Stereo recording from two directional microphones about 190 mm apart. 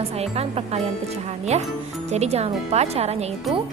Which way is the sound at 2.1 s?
35° right (ahead or behind).